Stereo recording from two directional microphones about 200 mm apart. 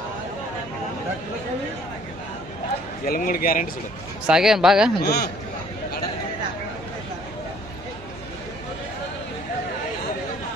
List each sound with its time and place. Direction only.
3.1 s speech: 45° left (ahead or behind)
4.3 s speech: centre (ahead or behind)
5.0 s speech: 55° left (ahead or behind)